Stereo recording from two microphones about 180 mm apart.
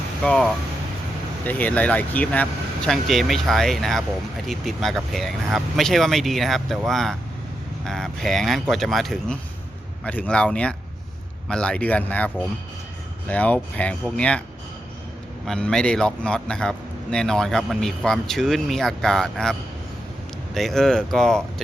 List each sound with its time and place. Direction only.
0.2 s a man's voice: 5° left (ahead or behind)
15.4 s a man's voice: 5° left (ahead or behind)